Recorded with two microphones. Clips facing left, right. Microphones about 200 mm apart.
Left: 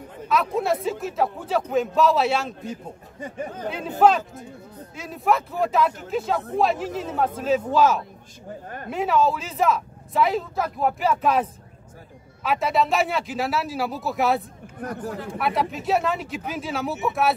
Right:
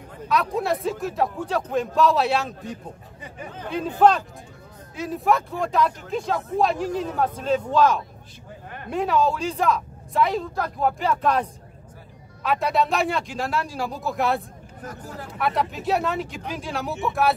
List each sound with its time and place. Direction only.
0.3 s speech: centre (ahead or behind)
3.2 s speech: 45° left (ahead or behind)
4.0 s speech: 5° left (ahead or behind)
12.4 s speech: centre (ahead or behind)
14.8 s speech: 60° left (ahead or behind)
15.3 s speech: centre (ahead or behind)